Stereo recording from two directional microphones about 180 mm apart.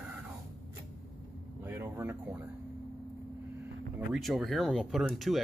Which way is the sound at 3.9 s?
5° right (ahead or behind).